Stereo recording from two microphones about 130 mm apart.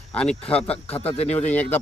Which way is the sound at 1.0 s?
50° left (ahead or behind).